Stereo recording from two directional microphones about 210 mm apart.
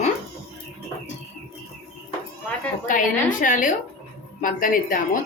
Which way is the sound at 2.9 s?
40° left (ahead or behind).